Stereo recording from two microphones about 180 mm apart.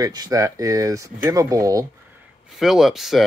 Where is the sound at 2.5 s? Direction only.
Centre (ahead or behind).